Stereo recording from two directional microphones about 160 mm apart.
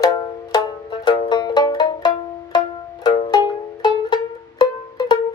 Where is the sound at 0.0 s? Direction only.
25° left (ahead or behind).